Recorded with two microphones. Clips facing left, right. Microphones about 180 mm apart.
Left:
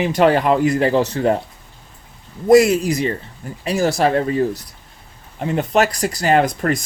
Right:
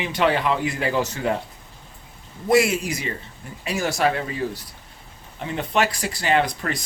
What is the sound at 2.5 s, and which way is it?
Speech, 40° left (ahead or behind).